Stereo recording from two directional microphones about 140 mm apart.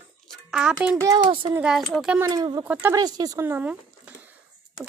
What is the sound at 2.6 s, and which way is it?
Speech, 15° right (ahead or behind).